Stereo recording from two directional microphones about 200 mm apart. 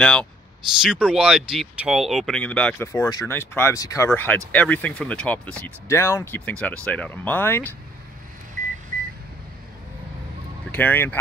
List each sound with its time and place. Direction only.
0.0 s speech: 5° left (ahead or behind)
2.9 s speech: 20° left (ahead or behind)
8.9 s microwave oven: 45° right (ahead or behind)
10.7 s speech: 10° left (ahead or behind)